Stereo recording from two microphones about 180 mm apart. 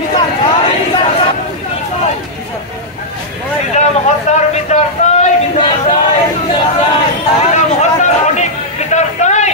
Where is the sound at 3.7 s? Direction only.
40° left (ahead or behind).